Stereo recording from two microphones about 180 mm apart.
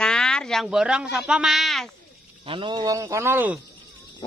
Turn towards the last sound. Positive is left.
turn(degrees=-10)  # may be behind; listen again after turning